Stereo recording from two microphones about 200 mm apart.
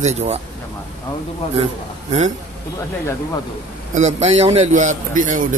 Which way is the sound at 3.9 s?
35° right (ahead or behind).